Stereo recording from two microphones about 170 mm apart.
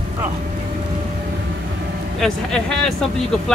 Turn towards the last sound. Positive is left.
turn(degrees=5)  # may be behind; listen again after turning